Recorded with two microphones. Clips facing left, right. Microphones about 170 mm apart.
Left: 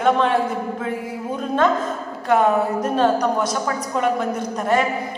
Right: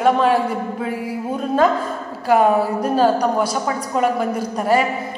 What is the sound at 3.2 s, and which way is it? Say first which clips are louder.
Speech: right 2 dB; 30° right (ahead or behind).